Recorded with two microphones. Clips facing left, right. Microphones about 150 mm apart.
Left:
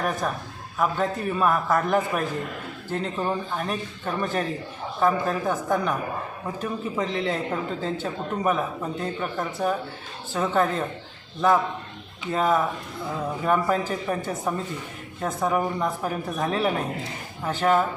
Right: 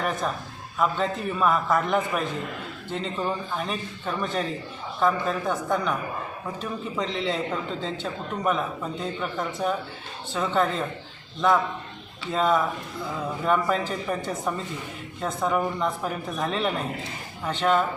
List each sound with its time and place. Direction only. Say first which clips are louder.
0.0 s a man's voice: left 1 dB; 5° left (ahead or behind)